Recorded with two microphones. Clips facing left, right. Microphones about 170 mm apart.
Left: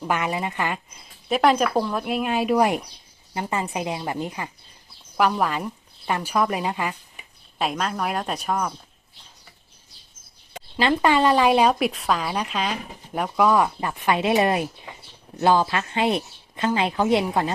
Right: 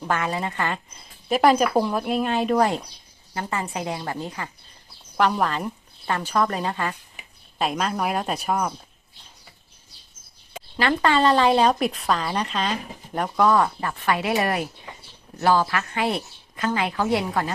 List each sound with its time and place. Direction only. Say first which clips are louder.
0.1 s speech: even; 15° left (ahead or behind)
1.3 s speech: right 1 dB; centre (ahead or behind); by 4.4 s 15° left (ahead or behind)
5.1 s speech: even; 5° left (ahead or behind)
7.2 s speech: right 1 dB; centre (ahead or behind)
10.8 s a woman's voice: left 1 dB; 15° left (ahead or behind)